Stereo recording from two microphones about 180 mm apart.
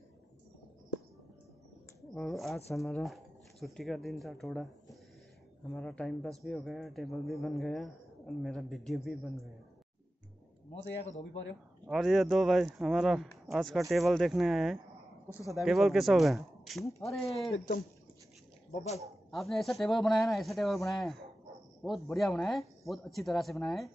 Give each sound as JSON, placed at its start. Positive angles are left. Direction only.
{"t": 2.0, "sound": "speech", "side_deg": 0}
{"t": 5.7, "sound": "speech", "side_deg": 5}
{"t": 10.8, "sound": "speech", "side_deg": 80}
{"t": 11.9, "sound": "speech", "side_deg": 0}
{"t": 19.3, "sound": "speech", "side_deg": 0}